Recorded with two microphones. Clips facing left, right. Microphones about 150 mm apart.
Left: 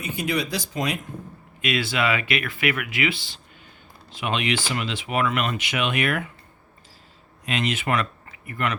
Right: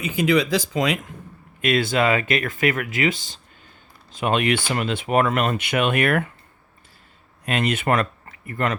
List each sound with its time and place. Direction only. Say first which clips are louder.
0.2 s speech: right 8 dB; 90° right
1.6 s speech: right 5 dB; 50° right (ahead or behind)
7.4 s speech: right 4 dB; 55° right (ahead or behind)
8.4 s speech: right 3 dB; 40° right (ahead or behind)